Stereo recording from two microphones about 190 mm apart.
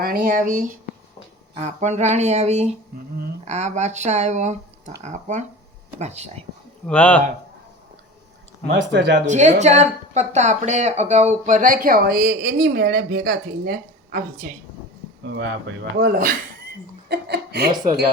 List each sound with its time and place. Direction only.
0.0 s speech: 50° right (ahead or behind)
6.8 s speech: 5° left (ahead or behind)
8.7 s speech: 60° right (ahead or behind)
9.2 s speech: 40° right (ahead or behind)
15.2 s speech: 75° right (ahead or behind)
16.0 s speech: 45° right (ahead or behind)
17.1 s chuckle: 60° right (ahead or behind)